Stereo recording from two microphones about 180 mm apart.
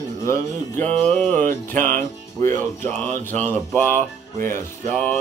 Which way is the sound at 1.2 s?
45° right (ahead or behind).